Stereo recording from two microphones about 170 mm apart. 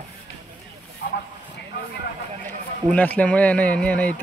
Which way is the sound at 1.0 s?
75° left (ahead or behind).